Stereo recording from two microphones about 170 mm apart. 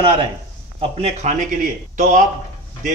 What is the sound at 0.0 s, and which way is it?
Speech, 30° right (ahead or behind).